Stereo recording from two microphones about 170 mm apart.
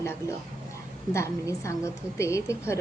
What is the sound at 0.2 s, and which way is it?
A woman's voice, 15° left (ahead or behind).